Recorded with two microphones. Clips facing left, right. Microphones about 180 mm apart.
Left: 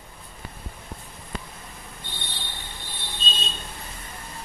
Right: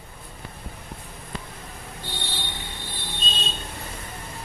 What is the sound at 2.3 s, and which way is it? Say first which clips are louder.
Vehicle: right 4 dB; 90° right.